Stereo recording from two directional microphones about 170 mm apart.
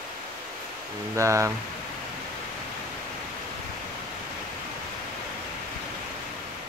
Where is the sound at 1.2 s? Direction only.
15° right (ahead or behind).